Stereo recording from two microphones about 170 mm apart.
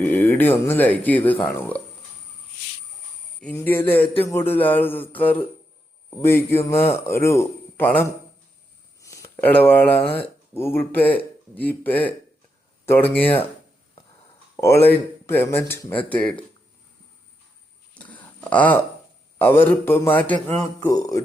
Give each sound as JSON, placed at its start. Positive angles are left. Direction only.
{"t": 0.0, "sound": "speech", "side_deg": 10}
{"t": 3.4, "sound": "speech", "side_deg": 10}
{"t": 14.5, "sound": "speech", "side_deg": 15}
{"t": 17.9, "sound": "a sound", "side_deg": 10}
{"t": 19.4, "sound": "speech", "side_deg": 15}
{"t": 20.7, "sound": "speech", "side_deg": 20}